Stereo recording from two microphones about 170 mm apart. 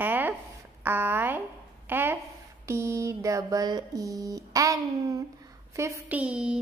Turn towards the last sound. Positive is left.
turn(degrees=-5)  # may be behind; listen again after turning